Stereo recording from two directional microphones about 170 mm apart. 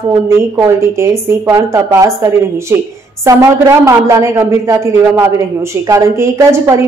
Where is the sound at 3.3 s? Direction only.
20° right (ahead or behind).